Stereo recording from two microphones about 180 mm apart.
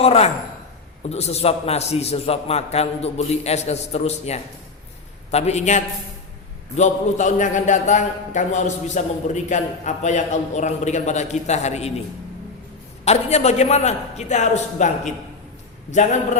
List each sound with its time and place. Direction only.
0.0 s a man's voice: 35° left (ahead or behind)
13.1 s a man's voice: 35° left (ahead or behind)